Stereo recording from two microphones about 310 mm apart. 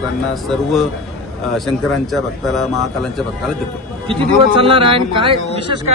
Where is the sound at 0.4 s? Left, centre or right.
Centre.